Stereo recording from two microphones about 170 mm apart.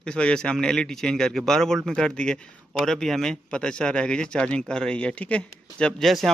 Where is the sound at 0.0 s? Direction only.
5° left (ahead or behind).